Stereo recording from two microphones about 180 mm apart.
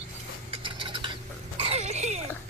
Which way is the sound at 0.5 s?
25° right (ahead or behind).